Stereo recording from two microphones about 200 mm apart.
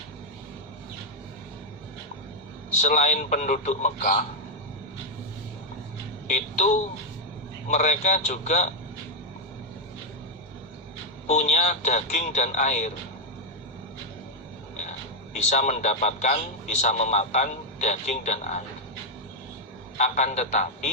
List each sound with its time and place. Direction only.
2.8 s a man's voice: 40° left (ahead or behind)
6.2 s speech: 35° left (ahead or behind)
7.7 s a man's voice: 40° left (ahead or behind)
11.3 s a man's voice: 35° left (ahead or behind)
15.4 s a man's voice: 35° left (ahead or behind)
20.0 s a man's voice: 35° left (ahead or behind)